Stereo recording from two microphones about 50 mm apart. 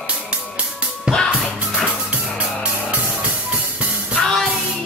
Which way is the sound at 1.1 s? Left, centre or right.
Right.